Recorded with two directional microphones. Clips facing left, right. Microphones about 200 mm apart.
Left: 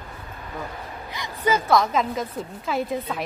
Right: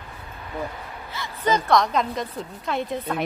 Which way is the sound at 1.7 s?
Centre (ahead or behind).